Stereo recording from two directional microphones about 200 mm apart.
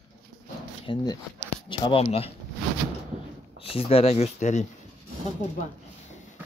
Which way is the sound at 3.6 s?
30° left (ahead or behind).